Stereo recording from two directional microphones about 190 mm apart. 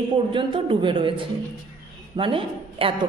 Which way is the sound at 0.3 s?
25° right (ahead or behind).